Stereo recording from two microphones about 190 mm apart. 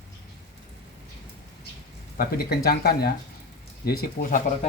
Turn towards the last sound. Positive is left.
turn(degrees=45)  # may be behind; listen again after turning